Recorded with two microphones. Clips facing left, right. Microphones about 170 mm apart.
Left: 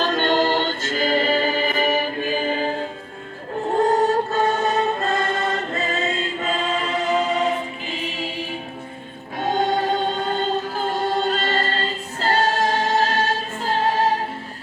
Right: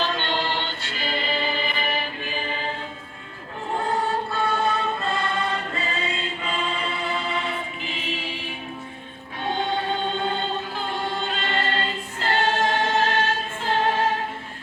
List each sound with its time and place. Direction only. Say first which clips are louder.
0.0 s music: left 7 dB; 45° left (ahead or behind)
12.2 s choir: left 3 dB; 40° left (ahead or behind)